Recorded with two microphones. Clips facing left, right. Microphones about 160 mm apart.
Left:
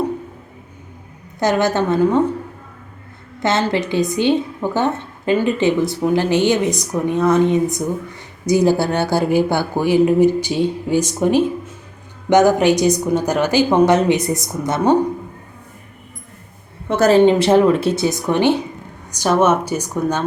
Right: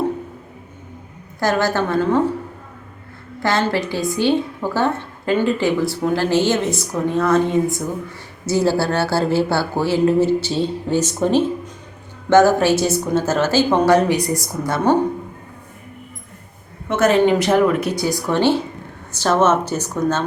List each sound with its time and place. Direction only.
1.4 s a woman's voice: 20° left (ahead or behind)
3.4 s a woman's voice: 20° left (ahead or behind)
16.9 s a woman's voice: 35° left (ahead or behind); by 20.2 s 15° left (ahead or behind)